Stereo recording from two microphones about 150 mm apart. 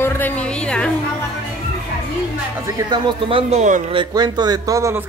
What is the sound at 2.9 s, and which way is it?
Speech, 35° right (ahead or behind).